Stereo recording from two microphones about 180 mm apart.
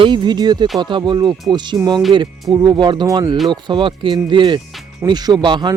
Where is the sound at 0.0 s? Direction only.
25° right (ahead or behind).